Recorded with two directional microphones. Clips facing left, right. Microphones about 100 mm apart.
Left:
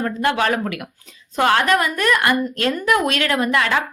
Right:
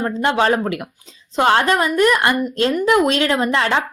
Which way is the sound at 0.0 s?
25° right (ahead or behind).